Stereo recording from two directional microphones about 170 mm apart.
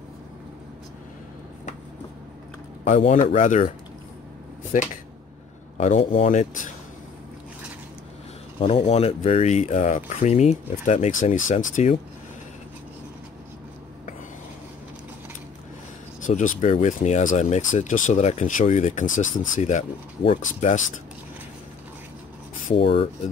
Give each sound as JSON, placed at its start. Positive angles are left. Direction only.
{"t": 2.8, "sound": "speech", "side_deg": 40}
{"t": 5.8, "sound": "speech", "side_deg": 45}
{"t": 8.5, "sound": "speech", "side_deg": 40}
{"t": 16.2, "sound": "speech", "side_deg": 50}
{"t": 22.8, "sound": "speech", "side_deg": 35}